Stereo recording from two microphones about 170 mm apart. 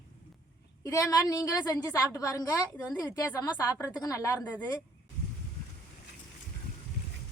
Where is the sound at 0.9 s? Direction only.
20° left (ahead or behind).